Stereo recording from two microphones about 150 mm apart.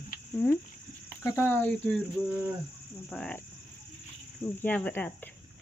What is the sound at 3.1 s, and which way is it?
Speech, 5° left (ahead or behind).